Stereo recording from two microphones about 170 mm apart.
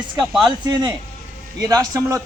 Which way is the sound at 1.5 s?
20° right (ahead or behind).